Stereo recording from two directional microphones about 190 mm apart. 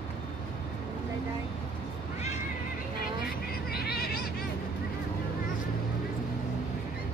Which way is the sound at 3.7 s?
55° left (ahead or behind).